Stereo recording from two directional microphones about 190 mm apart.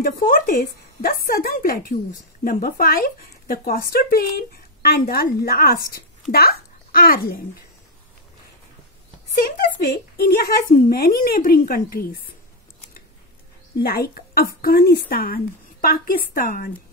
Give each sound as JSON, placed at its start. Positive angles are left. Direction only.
{"t": 0.0, "sound": "a child's voice", "side_deg": 45}
{"t": 9.8, "sound": "speech", "side_deg": 55}
{"t": 13.8, "sound": "speech", "side_deg": 55}